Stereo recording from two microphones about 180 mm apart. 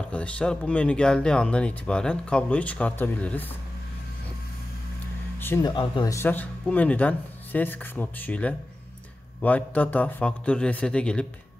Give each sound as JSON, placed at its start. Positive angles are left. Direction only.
{"t": 0.1, "sound": "speech", "side_deg": 5}
{"t": 5.4, "sound": "speech", "side_deg": 15}
{"t": 5.7, "sound": "speech", "side_deg": 25}
{"t": 6.1, "sound": "speech", "side_deg": 10}